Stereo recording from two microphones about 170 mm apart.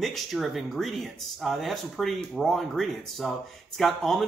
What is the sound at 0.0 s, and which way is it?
Speech, centre (ahead or behind).